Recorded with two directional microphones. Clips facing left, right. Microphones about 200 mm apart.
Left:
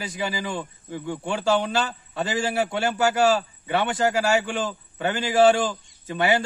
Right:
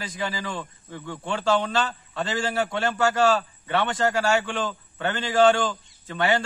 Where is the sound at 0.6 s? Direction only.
15° left (ahead or behind).